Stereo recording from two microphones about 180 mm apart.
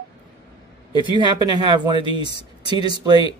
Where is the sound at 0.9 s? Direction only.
25° right (ahead or behind).